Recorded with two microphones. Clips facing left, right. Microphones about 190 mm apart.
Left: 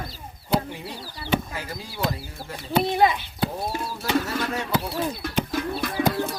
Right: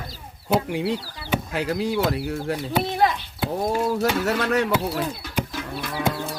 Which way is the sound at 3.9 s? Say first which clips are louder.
Right 4 dB; 70° right (ahead or behind).